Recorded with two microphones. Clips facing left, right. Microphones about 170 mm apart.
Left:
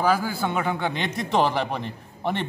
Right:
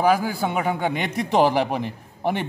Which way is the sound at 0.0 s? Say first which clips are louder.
Right 3 dB; 15° right (ahead or behind).